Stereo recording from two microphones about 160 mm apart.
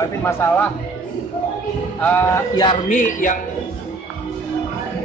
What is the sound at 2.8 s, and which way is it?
Music, 55° left (ahead or behind).